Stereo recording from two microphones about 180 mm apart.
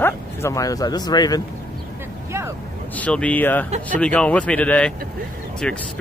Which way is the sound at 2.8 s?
10° left (ahead or behind).